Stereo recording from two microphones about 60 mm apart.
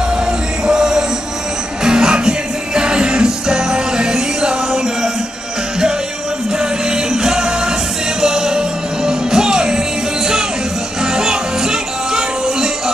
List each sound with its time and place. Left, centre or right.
0.7 s music: centre
6.6 s music: centre
11.1 s music: centre